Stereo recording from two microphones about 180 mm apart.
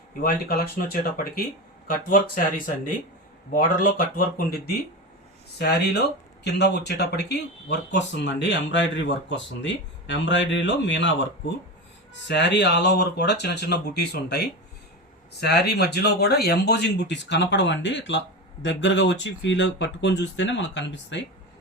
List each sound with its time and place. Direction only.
0.2 s speech: 55° left (ahead or behind)
5.5 s speech: 70° left (ahead or behind); by 11.1 s 85° left
12.3 s speech: 70° left (ahead or behind)